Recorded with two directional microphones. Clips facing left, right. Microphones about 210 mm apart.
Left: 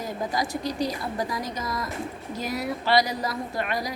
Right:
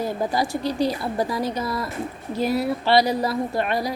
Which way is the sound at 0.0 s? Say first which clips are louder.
Right 5 dB; 30° right (ahead or behind).